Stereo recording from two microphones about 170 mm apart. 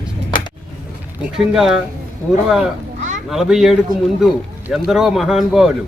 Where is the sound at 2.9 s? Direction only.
45° right (ahead or behind).